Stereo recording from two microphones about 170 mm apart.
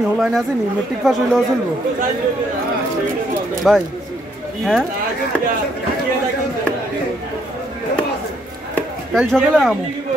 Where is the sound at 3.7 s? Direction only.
Centre (ahead or behind).